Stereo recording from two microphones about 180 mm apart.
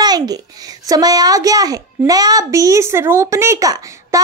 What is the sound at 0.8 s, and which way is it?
A child's voice, 20° right (ahead or behind).